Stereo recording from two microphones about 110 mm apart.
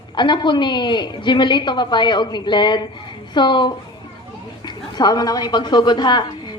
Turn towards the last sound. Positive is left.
turn(degrees=40)  # may be behind; listen again after turning